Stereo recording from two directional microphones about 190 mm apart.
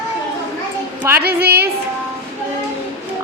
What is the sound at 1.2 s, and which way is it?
Speech, 55° right (ahead or behind).